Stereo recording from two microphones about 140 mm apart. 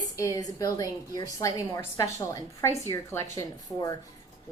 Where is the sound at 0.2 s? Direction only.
25° left (ahead or behind).